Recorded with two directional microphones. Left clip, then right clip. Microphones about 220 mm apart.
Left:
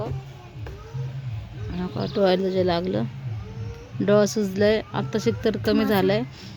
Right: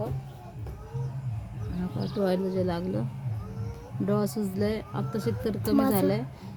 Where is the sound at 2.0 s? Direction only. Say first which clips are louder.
Left 7 dB; 20° left (ahead or behind).